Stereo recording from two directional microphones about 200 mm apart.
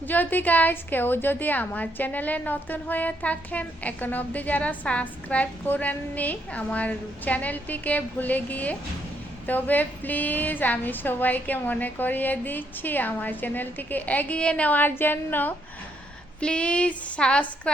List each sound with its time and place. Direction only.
0.1 s a woman's voice: 10° left (ahead or behind)